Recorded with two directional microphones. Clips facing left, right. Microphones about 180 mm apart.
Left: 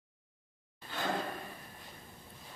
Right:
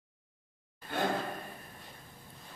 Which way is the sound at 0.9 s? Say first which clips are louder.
Right 7 dB; 55° right (ahead or behind).